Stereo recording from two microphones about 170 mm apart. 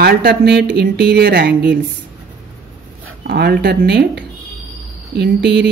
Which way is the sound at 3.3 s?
70° right (ahead or behind).